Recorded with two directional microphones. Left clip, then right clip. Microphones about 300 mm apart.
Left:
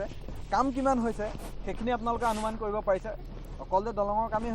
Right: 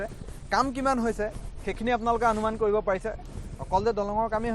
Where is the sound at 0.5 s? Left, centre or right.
Right.